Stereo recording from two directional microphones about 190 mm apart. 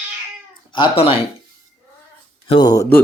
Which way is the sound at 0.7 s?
30° left (ahead or behind).